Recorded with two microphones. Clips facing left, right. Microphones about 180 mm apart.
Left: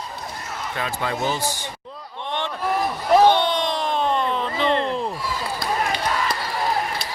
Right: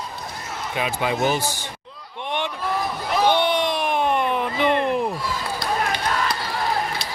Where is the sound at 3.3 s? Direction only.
10° right (ahead or behind).